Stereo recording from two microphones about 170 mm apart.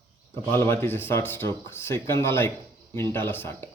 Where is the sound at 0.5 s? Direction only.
15° left (ahead or behind).